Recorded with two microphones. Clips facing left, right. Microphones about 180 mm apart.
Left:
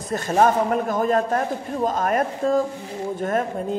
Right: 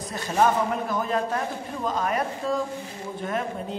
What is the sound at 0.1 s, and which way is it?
Speech, 45° left (ahead or behind).